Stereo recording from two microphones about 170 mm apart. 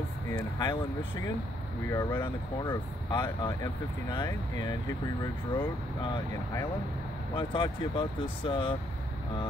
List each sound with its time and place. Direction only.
0.3 s speech: 20° left (ahead or behind)
1.9 s speech: 15° left (ahead or behind)
2.6 s speech: 25° left (ahead or behind)
6.1 s speech: 20° left (ahead or behind)